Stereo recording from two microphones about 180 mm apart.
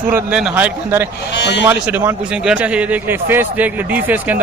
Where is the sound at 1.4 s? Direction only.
75° left (ahead or behind).